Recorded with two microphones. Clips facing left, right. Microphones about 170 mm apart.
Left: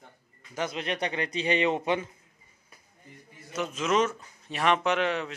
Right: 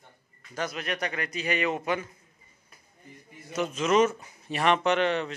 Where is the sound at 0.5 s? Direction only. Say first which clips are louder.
Left 1 dB; 25° left (ahead or behind).